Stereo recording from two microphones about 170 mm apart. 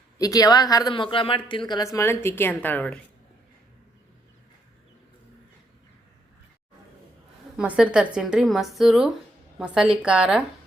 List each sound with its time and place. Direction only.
0.2 s a woman's voice: 20° left (ahead or behind)
7.5 s speech: 5° right (ahead or behind)